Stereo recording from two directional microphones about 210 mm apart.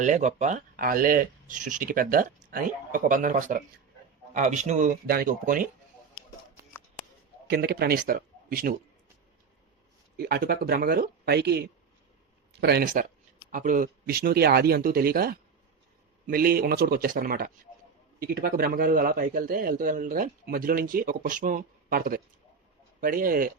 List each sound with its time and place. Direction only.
0.0 s speech: 35° right (ahead or behind)
7.4 s speech: 50° right (ahead or behind)
10.2 s a man's voice: 45° right (ahead or behind)